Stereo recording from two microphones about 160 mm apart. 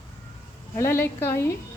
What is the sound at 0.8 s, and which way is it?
Speech, 15° left (ahead or behind).